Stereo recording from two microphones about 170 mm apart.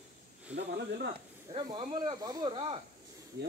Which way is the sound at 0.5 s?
75° right (ahead or behind).